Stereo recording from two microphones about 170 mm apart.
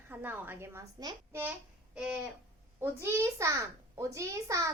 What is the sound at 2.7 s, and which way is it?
A woman's voice, 15° right (ahead or behind).